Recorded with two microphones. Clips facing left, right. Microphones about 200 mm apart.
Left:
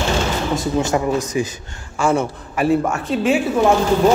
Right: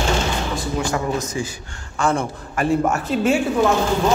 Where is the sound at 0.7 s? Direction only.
20° left (ahead or behind).